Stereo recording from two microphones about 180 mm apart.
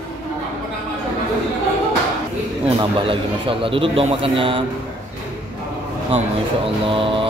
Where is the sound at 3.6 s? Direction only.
30° right (ahead or behind).